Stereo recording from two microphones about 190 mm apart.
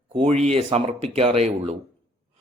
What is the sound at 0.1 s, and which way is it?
Speech, 35° right (ahead or behind).